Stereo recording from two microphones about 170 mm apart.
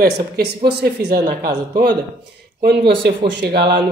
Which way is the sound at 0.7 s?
75° right (ahead or behind).